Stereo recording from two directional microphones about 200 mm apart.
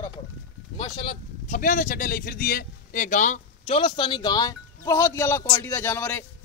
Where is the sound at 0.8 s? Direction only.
25° left (ahead or behind).